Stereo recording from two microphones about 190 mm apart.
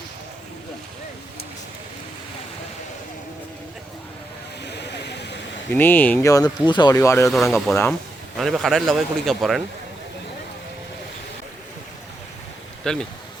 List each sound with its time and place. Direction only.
4.6 s a sound: 65° left (ahead or behind)
5.7 s speech: 10° left (ahead or behind)
7.3 s speech: centre (ahead or behind)
12.8 s speech: 5° left (ahead or behind)